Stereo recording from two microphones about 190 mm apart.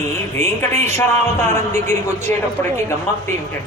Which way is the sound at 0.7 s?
35° right (ahead or behind).